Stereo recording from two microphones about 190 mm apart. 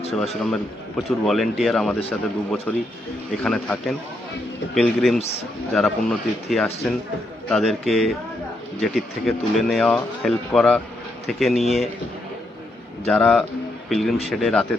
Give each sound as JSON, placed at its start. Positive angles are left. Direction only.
{"t": 0.1, "sound": "speech", "side_deg": 0}
{"t": 13.1, "sound": "speech", "side_deg": 5}